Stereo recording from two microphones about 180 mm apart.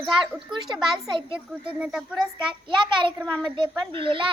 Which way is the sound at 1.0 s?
25° right (ahead or behind).